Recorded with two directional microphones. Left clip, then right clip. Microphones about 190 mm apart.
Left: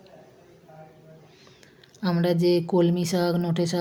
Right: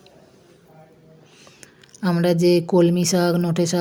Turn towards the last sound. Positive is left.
turn(degrees=-25)  # may be behind; listen again after turning